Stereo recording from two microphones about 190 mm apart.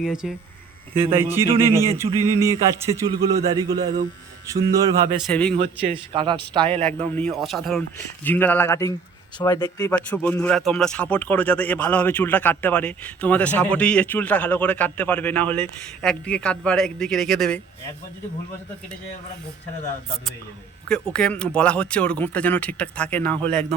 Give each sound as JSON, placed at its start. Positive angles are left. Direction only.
{"t": 0.0, "sound": "speech", "side_deg": -5}
{"t": 2.1, "sound": "speech", "side_deg": 20}
{"t": 2.8, "sound": "a man's voice", "side_deg": -20}
{"t": 5.2, "sound": "speech", "side_deg": 5}
{"t": 5.5, "sound": "a man's voice", "side_deg": -30}
{"t": 6.7, "sound": "speech", "side_deg": 5}
{"t": 9.9, "sound": "speech", "side_deg": 5}
{"t": 20.8, "sound": "speech", "side_deg": 5}